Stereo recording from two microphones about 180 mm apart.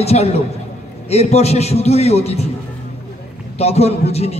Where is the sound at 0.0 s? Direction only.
35° left (ahead or behind).